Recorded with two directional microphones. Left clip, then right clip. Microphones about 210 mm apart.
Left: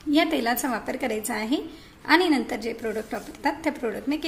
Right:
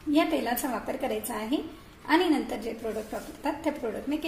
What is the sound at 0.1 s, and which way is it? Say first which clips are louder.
A woman's voice: left 3 dB; 20° left (ahead or behind).